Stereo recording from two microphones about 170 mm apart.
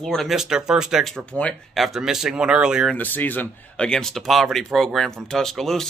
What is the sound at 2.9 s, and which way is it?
Speech, 10° left (ahead or behind).